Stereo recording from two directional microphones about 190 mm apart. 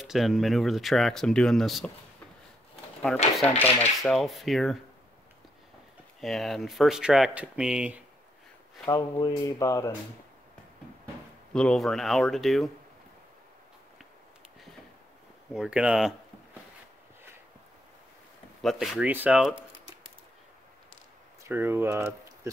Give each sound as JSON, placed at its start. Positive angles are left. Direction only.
{"t": 0.0, "sound": "speech", "side_deg": 0}
{"t": 3.3, "sound": "rub", "side_deg": 10}
{"t": 4.0, "sound": "speech", "side_deg": 0}
{"t": 6.2, "sound": "speech", "side_deg": 0}
{"t": 8.8, "sound": "speech", "side_deg": 20}
{"t": 11.5, "sound": "speech", "side_deg": 5}
{"t": 15.5, "sound": "speech", "side_deg": -5}
{"t": 18.6, "sound": "speech", "side_deg": 0}
{"t": 21.5, "sound": "speech", "side_deg": -10}